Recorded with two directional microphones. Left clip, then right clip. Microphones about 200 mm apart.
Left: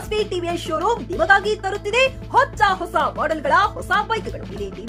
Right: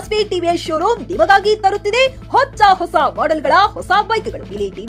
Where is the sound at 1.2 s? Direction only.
15° right (ahead or behind).